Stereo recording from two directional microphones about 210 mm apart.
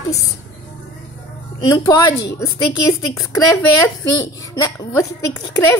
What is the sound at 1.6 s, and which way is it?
Speech, 15° left (ahead or behind).